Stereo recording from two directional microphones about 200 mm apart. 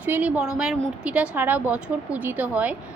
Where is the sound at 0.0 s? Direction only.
10° right (ahead or behind).